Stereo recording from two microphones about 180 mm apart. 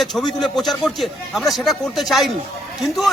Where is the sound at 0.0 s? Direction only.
Centre (ahead or behind).